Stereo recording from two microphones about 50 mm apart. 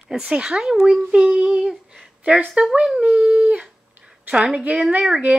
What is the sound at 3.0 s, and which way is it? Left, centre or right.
Speech, right.